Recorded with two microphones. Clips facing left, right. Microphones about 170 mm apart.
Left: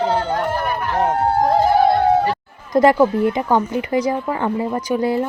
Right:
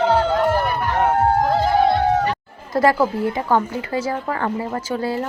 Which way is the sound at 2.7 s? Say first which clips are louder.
Left 4 dB; 20° left (ahead or behind).